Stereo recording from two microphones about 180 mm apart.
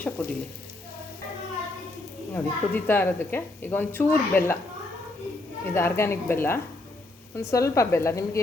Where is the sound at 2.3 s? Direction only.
10° left (ahead or behind).